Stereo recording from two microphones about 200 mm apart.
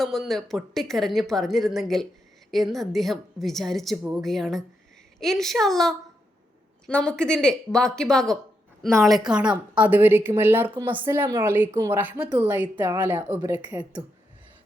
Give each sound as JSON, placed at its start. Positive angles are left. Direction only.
{"t": 0.0, "sound": "a woman's voice", "side_deg": 0}
{"t": 13.7, "sound": "a woman's voice", "side_deg": -5}